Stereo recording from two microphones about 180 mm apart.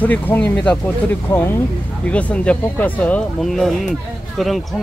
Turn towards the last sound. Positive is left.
turn(degrees=0)  # may be behind; listen again after turning